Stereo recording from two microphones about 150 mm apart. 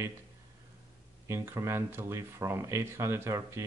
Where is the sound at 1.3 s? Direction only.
20° right (ahead or behind).